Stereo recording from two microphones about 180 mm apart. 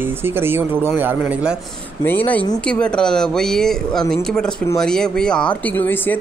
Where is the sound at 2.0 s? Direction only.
10° left (ahead or behind).